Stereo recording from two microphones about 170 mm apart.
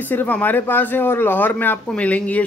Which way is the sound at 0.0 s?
10° left (ahead or behind).